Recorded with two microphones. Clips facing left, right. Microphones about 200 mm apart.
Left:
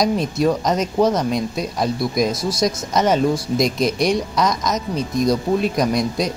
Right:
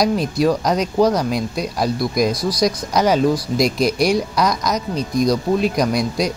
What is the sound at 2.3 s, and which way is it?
Speech, 25° left (ahead or behind).